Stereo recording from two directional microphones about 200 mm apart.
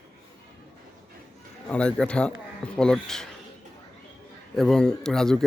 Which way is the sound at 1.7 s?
5° left (ahead or behind).